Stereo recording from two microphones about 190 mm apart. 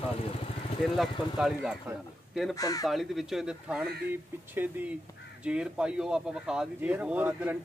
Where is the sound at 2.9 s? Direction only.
Centre (ahead or behind).